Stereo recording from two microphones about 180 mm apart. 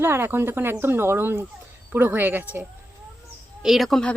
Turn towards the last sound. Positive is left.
turn(degrees=5)  # may be behind; listen again after turning